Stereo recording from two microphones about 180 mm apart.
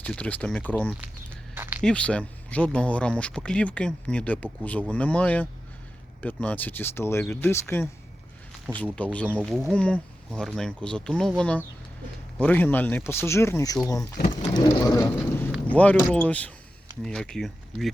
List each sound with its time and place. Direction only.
0.0 s speech: 5° left (ahead or behind)
1.5 s a sound: 10° right (ahead or behind)
1.8 s speech: 5° left (ahead or behind)
14.3 s vehicle: 25° left (ahead or behind)
15.6 s speech: 10° left (ahead or behind)